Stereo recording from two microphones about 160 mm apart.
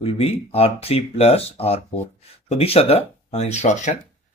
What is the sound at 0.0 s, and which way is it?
Speech, 40° left (ahead or behind).